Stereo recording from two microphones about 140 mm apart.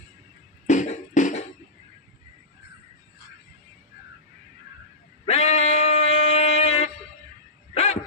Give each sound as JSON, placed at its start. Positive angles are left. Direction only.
{"t": 0.7, "sound": "beatboxing", "side_deg": 65}
{"t": 5.2, "sound": "a sound", "side_deg": 50}
{"t": 7.7, "sound": "dog", "side_deg": 50}